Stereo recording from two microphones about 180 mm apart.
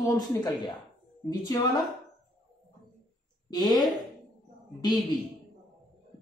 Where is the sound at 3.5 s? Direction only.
20° left (ahead or behind).